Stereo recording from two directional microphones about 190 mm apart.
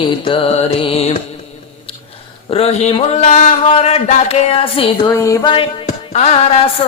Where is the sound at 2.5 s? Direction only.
30° left (ahead or behind).